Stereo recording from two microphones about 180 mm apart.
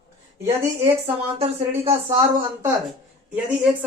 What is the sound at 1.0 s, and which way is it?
Speech, 35° right (ahead or behind).